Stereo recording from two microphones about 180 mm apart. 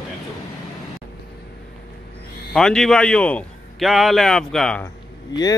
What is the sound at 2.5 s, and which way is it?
Speech, 5° left (ahead or behind).